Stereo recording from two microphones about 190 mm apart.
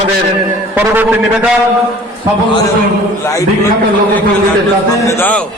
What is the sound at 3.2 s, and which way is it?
Speech, 15° left (ahead or behind).